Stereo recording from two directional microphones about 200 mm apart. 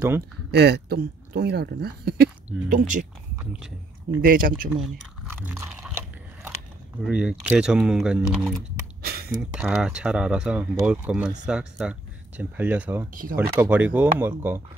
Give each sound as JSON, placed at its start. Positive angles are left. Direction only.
{"t": 0.5, "sound": "speech", "side_deg": -55}
{"t": 4.2, "sound": "speech", "side_deg": -45}
{"t": 5.4, "sound": "speech", "side_deg": -10}
{"t": 7.0, "sound": "speech", "side_deg": -5}
{"t": 9.0, "sound": "a sound", "side_deg": -50}
{"t": 9.4, "sound": "speech", "side_deg": -5}
{"t": 13.1, "sound": "speech", "side_deg": -45}
{"t": 13.6, "sound": "speech", "side_deg": -10}